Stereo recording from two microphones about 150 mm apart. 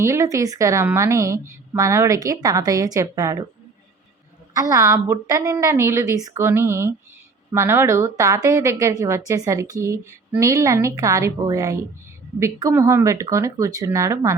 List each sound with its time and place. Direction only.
0.0 s a woman's voice: 20° right (ahead or behind)
4.5 s a woman's voice: 20° right (ahead or behind)